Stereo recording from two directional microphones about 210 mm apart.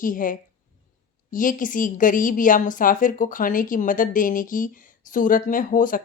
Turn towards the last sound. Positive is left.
turn(degrees=40)  # may be behind; listen again after turning